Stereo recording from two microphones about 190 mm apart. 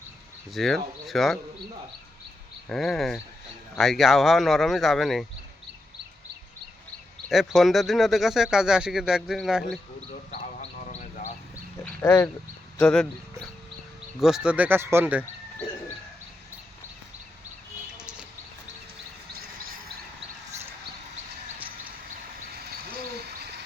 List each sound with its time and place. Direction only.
0.5 s speech: centre (ahead or behind)
2.6 s speech: centre (ahead or behind)
7.3 s speech: centre (ahead or behind)
10.3 s a sound: 30° left (ahead or behind)
12.0 s speech: 15° left (ahead or behind)
12.8 s speech: centre (ahead or behind)
17.9 s a sound: 5° right (ahead or behind)
19.3 s cricket: 50° right (ahead or behind)